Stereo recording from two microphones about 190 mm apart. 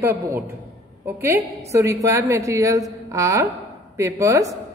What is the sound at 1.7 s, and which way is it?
A woman's voice, 15° right (ahead or behind).